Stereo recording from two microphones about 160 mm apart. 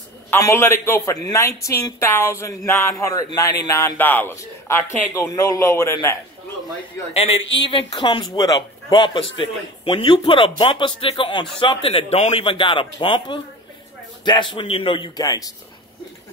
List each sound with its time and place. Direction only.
0.3 s a woman's voice: 15° left (ahead or behind)
7.2 s a man's voice: 40° left (ahead or behind); by 15.5 s 20° left (ahead or behind)